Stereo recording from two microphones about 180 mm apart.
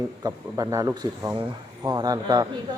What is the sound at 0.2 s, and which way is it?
A man's voice, 20° right (ahead or behind).